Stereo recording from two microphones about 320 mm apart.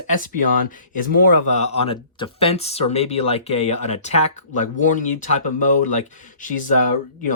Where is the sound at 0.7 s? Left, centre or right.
Left.